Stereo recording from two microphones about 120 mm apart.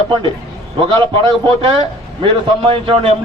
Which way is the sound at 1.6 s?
50° right (ahead or behind).